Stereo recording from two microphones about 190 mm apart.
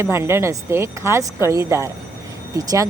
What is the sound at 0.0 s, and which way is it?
Speech, 15° right (ahead or behind).